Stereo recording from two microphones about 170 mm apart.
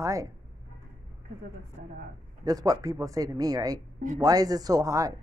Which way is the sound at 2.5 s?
20° right (ahead or behind).